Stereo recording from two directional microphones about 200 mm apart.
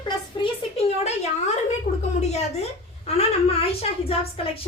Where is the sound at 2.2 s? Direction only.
35° left (ahead or behind).